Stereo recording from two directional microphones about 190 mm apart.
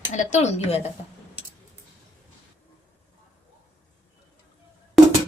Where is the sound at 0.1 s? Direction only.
40° left (ahead or behind).